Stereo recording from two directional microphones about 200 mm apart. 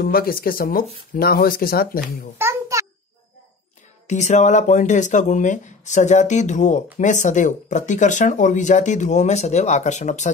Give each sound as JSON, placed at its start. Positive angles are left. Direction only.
{"t": 0.0, "sound": "speech", "side_deg": 50}
{"t": 2.3, "sound": "a sound", "side_deg": -15}
{"t": 4.1, "sound": "speech", "side_deg": 35}